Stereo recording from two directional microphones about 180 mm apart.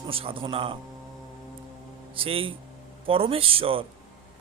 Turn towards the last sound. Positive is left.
turn(degrees=-30)  # may be behind; listen again after turning